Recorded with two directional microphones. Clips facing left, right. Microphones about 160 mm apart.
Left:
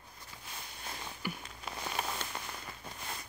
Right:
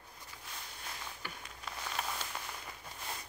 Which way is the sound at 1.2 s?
10° left (ahead or behind).